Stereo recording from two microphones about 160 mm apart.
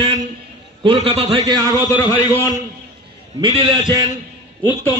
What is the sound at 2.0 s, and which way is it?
Speech, 25° left (ahead or behind).